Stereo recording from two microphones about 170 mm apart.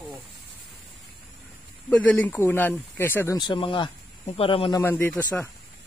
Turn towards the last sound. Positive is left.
turn(degrees=10)  # may be behind; listen again after turning